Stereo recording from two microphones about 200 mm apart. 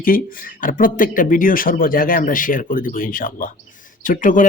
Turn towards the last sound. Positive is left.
turn(degrees=40)  # may be behind; listen again after turning